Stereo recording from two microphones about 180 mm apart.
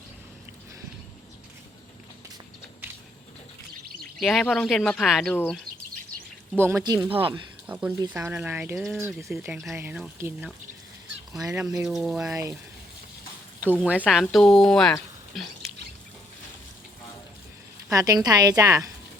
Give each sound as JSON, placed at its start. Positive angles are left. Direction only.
{"t": 4.2, "sound": "speech", "side_deg": 0}
{"t": 5.3, "sound": "speech", "side_deg": 10}
{"t": 6.6, "sound": "a woman's voice", "side_deg": -15}
{"t": 7.7, "sound": "speech", "side_deg": -5}
{"t": 11.3, "sound": "a woman's voice", "side_deg": -20}
{"t": 11.9, "sound": "speech", "side_deg": -5}
{"t": 12.3, "sound": "speech", "side_deg": -15}
{"t": 13.7, "sound": "speech", "side_deg": -5}
{"t": 17.9, "sound": "a woman's voice", "side_deg": -20}